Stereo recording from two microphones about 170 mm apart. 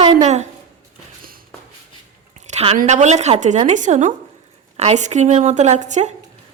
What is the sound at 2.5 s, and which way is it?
A woman's voice, 40° right (ahead or behind).